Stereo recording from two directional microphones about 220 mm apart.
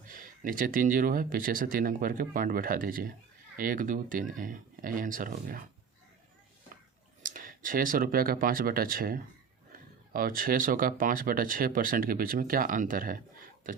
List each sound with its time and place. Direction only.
0.1 s speech: 40° right (ahead or behind)
7.2 s speech: 35° right (ahead or behind)